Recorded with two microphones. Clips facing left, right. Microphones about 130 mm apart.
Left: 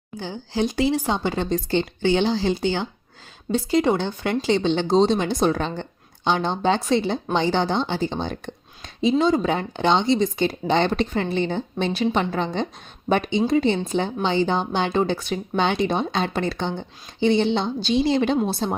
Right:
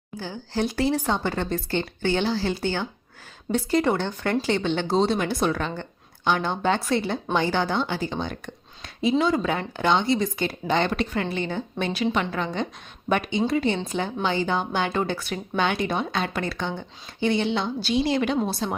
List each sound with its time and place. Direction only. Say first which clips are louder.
0.2 s speech: left 2 dB; 20° left (ahead or behind); by 18.8 s 35° left (ahead or behind)